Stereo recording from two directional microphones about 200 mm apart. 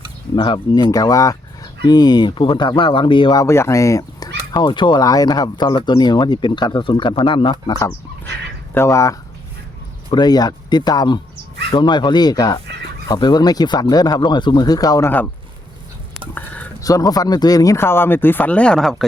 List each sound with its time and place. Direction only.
0.3 s speech: 25° left (ahead or behind)
16.3 s speech: 15° left (ahead or behind)